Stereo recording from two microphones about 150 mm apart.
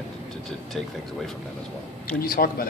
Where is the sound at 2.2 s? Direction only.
75° left (ahead or behind).